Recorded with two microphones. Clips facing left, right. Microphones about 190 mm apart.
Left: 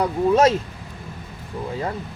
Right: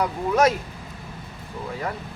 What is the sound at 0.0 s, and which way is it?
Speech, 25° left (ahead or behind).